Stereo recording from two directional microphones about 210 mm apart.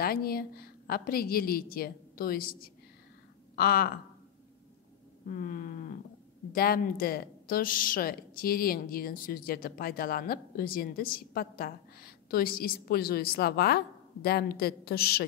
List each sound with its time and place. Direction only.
0.0 s a woman's voice: 45° left (ahead or behind)
5.3 s a sound: 40° left (ahead or behind)
6.5 s a woman's voice: 45° left (ahead or behind)